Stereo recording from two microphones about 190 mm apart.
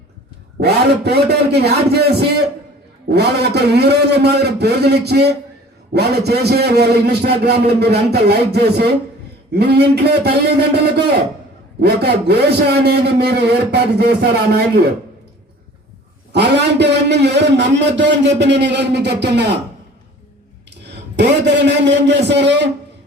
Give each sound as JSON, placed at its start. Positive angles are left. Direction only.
{"t": 0.6, "sound": "a man's voice", "side_deg": -60}
{"t": 16.3, "sound": "a man's voice", "side_deg": -60}
{"t": 20.8, "sound": "a man's voice", "side_deg": -65}